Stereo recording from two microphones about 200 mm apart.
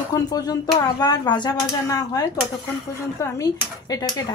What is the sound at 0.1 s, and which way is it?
Speech, 20° left (ahead or behind).